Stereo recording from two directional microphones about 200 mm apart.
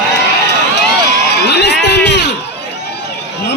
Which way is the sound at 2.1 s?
55° left (ahead or behind).